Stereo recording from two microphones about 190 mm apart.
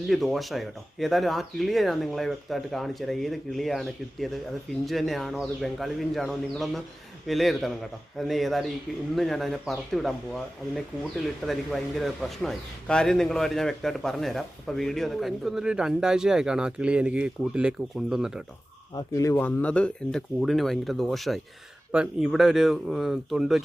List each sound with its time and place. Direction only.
0.1 s speech: centre (ahead or behind)
18.9 s speech: 15° left (ahead or behind); by 23.6 s centre (ahead or behind)